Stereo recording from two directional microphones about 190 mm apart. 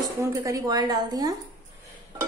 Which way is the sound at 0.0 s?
15° right (ahead or behind).